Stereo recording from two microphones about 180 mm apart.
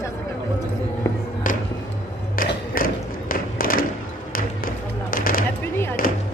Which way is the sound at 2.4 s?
50° left (ahead or behind).